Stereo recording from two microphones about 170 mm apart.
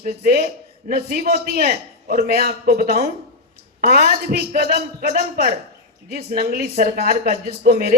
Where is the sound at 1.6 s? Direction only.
45° right (ahead or behind); by 4.3 s 65° right (ahead or behind).